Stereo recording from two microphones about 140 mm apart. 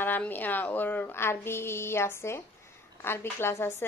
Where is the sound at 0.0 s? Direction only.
15° left (ahead or behind).